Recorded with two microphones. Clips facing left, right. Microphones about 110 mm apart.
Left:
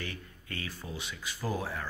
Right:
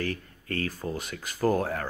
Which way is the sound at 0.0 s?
40° right (ahead or behind).